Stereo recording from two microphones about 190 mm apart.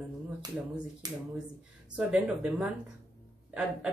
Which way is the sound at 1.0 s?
20° right (ahead or behind).